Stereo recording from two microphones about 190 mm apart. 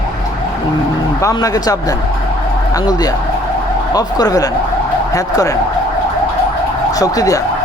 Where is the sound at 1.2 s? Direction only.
20° left (ahead or behind).